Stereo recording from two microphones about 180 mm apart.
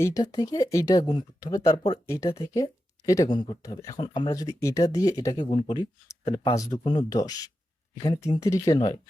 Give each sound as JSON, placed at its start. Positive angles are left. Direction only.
{"t": 0.0, "sound": "speech", "side_deg": 20}